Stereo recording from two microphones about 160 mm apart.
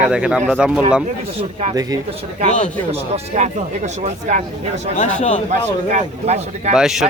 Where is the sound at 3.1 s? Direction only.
45° right (ahead or behind).